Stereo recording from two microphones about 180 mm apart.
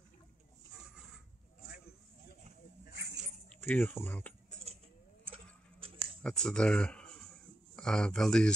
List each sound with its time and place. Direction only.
3.6 s speech: 10° left (ahead or behind)
5.8 s a sound: 30° right (ahead or behind)
6.2 s speech: 5° left (ahead or behind)